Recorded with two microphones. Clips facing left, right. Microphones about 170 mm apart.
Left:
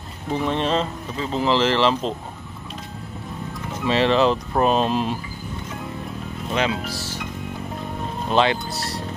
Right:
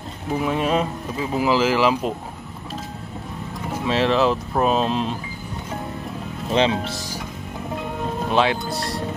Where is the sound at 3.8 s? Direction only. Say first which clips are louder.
Left 1 dB; centre (ahead or behind).